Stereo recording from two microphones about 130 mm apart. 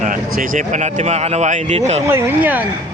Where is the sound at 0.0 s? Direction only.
90° right; by 2.0 s 60° right (ahead or behind).